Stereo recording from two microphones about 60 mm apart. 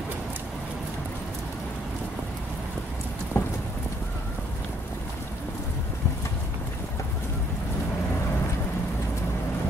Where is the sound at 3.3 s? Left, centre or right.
Left.